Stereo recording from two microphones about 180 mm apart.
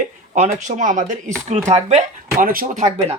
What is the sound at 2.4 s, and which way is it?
Speech, 50° right (ahead or behind).